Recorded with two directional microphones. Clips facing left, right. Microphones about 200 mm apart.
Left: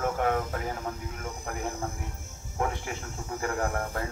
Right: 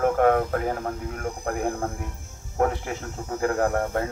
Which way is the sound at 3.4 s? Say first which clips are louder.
Right 7 dB; 40° right (ahead or behind).